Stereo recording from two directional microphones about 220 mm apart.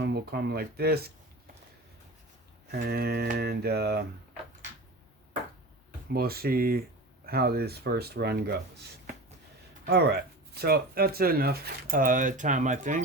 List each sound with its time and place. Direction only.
0.0 s speech: 45° right (ahead or behind)
2.7 s speech: 45° right (ahead or behind)
6.1 s speech: 45° right (ahead or behind)
9.8 s speech: 45° right (ahead or behind)